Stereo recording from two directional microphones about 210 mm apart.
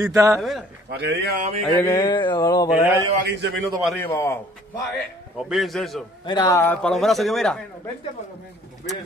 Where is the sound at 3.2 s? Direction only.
55° right (ahead or behind).